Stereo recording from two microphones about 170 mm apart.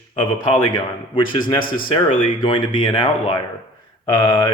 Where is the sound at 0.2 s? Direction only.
30° left (ahead or behind).